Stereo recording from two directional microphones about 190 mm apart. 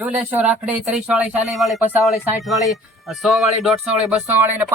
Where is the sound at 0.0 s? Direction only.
10° right (ahead or behind).